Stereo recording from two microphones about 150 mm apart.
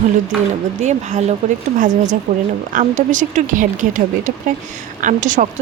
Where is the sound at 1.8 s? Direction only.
60° right (ahead or behind).